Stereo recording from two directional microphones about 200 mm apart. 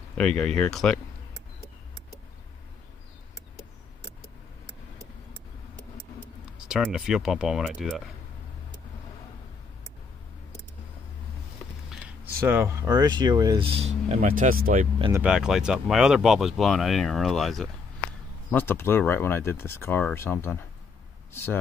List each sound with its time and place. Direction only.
0.2 s speech: 5° left (ahead or behind)
6.7 s speech: 5° right (ahead or behind)
12.4 s speech: 10° right (ahead or behind); by 14.9 s 45° right (ahead or behind)
15.0 s speech: 20° right (ahead or behind)
15.2 s speech: 5° right (ahead or behind)